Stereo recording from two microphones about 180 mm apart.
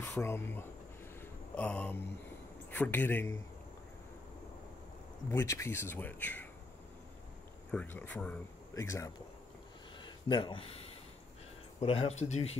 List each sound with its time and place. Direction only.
0.0 s speech: 15° left (ahead or behind)
5.3 s speech: 15° left (ahead or behind)
7.7 s speech: 10° left (ahead or behind)
10.0 s a sound: 25° left (ahead or behind)
11.8 s speech: 30° left (ahead or behind)